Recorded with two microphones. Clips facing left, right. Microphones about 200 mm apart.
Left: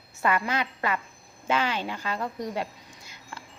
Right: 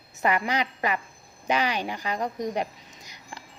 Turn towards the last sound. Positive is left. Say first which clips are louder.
# even
turn(degrees=-15)  # may be behind; listen again after turning